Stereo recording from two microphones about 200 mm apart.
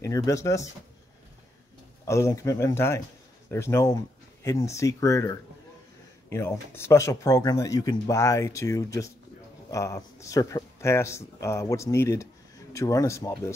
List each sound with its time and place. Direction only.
0.0 s speech: 15° left (ahead or behind)
2.0 s speech: 15° left (ahead or behind)